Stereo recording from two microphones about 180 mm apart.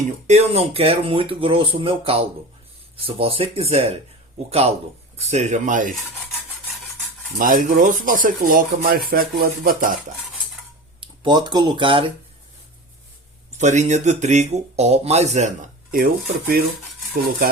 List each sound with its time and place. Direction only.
0.3 s speech: 35° right (ahead or behind)
7.3 s speech: 50° right (ahead or behind)
11.0 s speech: 25° right (ahead or behind)
13.6 s speech: 40° right (ahead or behind)